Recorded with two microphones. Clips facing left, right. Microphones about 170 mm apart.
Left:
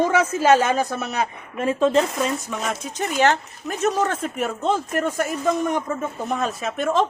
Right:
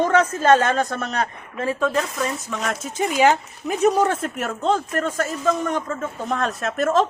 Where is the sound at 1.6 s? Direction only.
25° left (ahead or behind).